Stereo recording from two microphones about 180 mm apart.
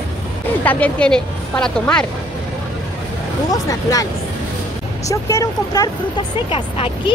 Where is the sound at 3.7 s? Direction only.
20° left (ahead or behind).